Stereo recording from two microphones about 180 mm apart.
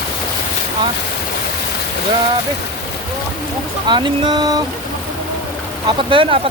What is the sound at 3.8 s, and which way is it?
Speech, 25° right (ahead or behind).